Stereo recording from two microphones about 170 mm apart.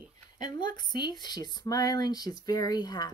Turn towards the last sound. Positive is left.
turn(degrees=25)  # may be behind; listen again after turning